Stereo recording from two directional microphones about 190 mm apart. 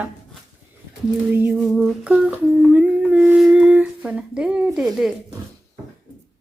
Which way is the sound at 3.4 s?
5° right (ahead or behind).